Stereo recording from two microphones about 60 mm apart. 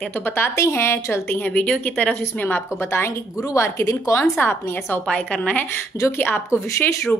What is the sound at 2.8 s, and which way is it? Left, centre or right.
Speech, left.